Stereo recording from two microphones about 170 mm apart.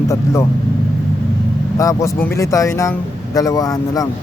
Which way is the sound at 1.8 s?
20° left (ahead or behind).